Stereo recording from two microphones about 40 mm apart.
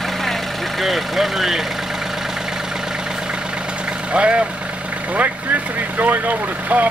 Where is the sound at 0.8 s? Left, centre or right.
Centre.